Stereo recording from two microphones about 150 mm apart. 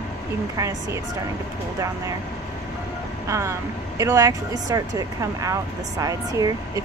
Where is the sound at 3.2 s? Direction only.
20° right (ahead or behind).